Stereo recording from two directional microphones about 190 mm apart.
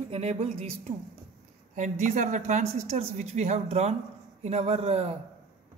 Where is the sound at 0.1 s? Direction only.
35° right (ahead or behind).